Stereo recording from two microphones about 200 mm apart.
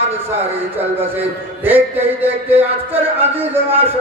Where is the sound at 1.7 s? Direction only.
10° right (ahead or behind).